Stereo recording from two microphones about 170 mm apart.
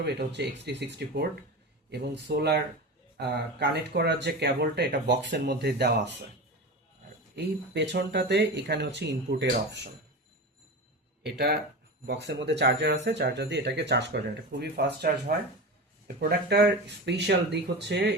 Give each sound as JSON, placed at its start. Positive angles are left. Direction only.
{"t": 0.0, "sound": "speech", "side_deg": -80}
{"t": 7.3, "sound": "speech", "side_deg": -90}
{"t": 11.2, "sound": "speech", "side_deg": -80}
{"t": 12.0, "sound": "speech", "side_deg": -90}
{"t": 14.6, "sound": "speech", "side_deg": -75}